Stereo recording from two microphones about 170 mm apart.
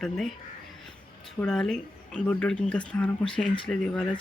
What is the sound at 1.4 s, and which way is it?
Speech, 5° left (ahead or behind).